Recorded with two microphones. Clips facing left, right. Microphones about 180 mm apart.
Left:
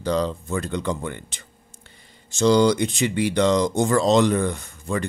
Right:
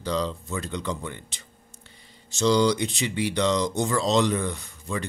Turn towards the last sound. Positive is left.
turn(degrees=50)  # may be behind; listen again after turning